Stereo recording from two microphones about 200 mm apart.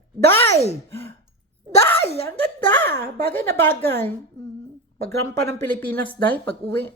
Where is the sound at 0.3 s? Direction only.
15° left (ahead or behind).